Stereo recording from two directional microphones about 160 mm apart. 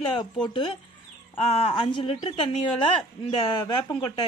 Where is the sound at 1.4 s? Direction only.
40° left (ahead or behind).